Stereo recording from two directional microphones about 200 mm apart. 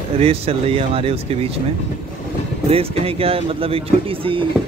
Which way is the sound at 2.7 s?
30° right (ahead or behind).